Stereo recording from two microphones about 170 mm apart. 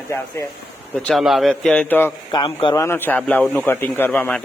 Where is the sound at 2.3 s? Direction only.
25° left (ahead or behind).